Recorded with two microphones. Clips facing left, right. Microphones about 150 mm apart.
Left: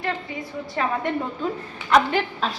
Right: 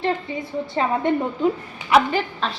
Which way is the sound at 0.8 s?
20° right (ahead or behind).